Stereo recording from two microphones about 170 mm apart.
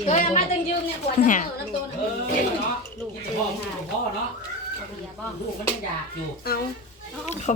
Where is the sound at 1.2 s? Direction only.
50° left (ahead or behind).